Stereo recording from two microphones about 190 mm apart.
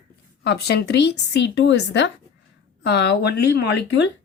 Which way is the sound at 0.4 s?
60° left (ahead or behind).